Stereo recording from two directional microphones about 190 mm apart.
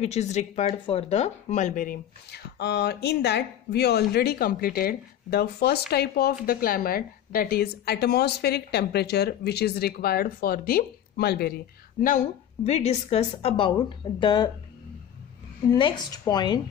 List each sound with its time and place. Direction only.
0.0 s speech: 35° left (ahead or behind); by 11.5 s 55° left (ahead or behind)
12.0 s a woman's voice: 40° left (ahead or behind); by 14.5 s 25° left (ahead or behind)
15.7 s speech: 20° left (ahead or behind)